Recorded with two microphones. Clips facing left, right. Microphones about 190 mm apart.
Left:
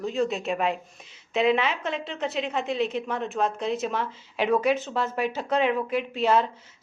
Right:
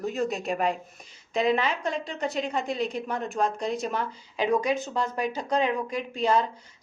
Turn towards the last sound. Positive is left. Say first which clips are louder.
# left 2 dB
turn(degrees=5)  # may be behind; listen again after turning